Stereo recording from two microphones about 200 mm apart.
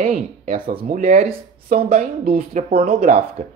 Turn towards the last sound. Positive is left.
turn(degrees=-45)  # may be behind; listen again after turning